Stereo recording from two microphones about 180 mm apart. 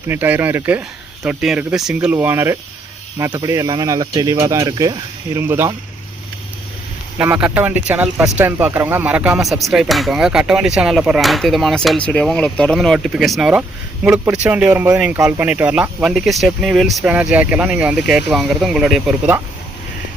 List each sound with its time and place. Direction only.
0.1 s speech: 10° right (ahead or behind)
7.2 s speech: 10° right (ahead or behind)